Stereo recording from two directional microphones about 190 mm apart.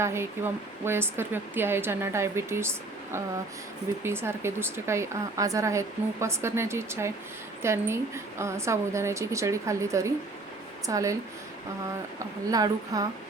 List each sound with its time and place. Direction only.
0.0 s a woman's voice: 15° right (ahead or behind)
12.5 s a woman's voice: 20° right (ahead or behind)